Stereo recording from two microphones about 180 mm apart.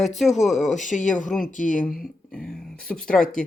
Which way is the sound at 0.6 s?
45° left (ahead or behind).